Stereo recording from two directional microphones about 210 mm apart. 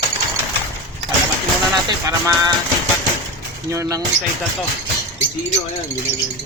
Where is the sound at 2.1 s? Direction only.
15° right (ahead or behind).